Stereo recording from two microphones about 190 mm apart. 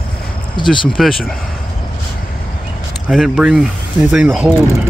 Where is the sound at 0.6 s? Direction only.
Centre (ahead or behind).